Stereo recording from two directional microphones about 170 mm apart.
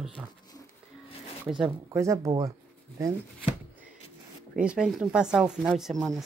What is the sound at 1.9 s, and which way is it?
Speech, 15° right (ahead or behind).